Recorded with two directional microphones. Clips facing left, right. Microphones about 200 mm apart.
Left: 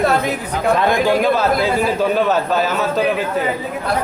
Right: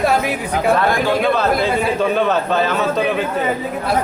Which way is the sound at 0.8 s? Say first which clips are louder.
Left 2 dB; 20° left (ahead or behind).